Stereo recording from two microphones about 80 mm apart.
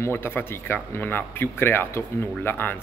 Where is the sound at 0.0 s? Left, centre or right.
Left.